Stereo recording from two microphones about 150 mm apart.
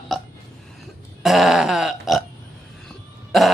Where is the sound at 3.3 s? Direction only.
Centre (ahead or behind).